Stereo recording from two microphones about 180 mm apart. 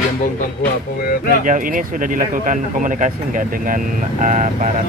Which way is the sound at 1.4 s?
50° right (ahead or behind).